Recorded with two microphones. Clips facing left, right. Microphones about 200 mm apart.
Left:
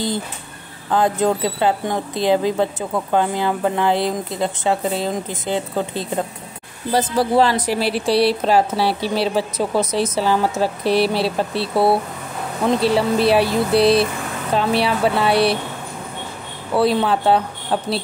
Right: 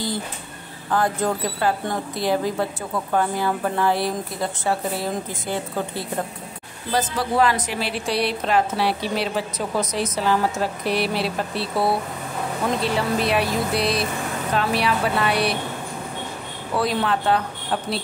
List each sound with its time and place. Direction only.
0.9 s a woman's voice: 20° left (ahead or behind)
16.7 s speech: 30° left (ahead or behind)